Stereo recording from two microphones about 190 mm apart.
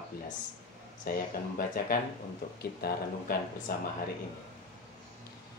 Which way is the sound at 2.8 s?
55° left (ahead or behind).